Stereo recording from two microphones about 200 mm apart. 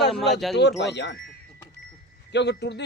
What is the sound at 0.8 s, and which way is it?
Speech, 60° left (ahead or behind).